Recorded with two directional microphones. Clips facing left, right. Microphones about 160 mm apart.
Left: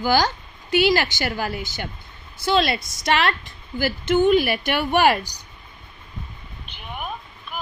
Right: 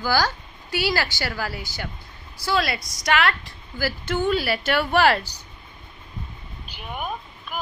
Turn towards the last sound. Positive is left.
turn(degrees=0)  # may be behind; listen again after turning